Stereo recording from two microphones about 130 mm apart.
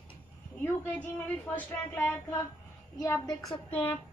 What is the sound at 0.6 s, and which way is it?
A woman's voice, 15° left (ahead or behind).